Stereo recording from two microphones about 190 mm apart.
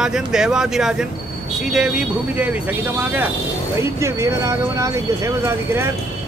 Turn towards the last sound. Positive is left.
turn(degrees=-15)  # may be behind; listen again after turning